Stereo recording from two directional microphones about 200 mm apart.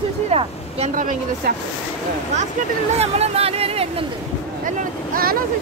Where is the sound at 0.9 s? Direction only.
40° right (ahead or behind).